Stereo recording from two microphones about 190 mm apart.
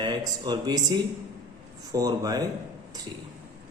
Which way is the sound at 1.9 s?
20° right (ahead or behind).